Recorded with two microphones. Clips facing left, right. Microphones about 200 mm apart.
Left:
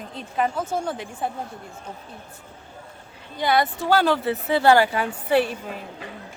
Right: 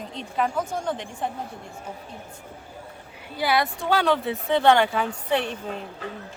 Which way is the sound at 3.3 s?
5° right (ahead or behind).